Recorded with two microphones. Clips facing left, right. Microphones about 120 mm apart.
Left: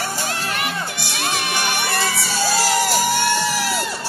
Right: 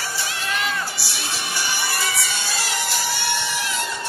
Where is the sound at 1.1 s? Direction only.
65° left (ahead or behind).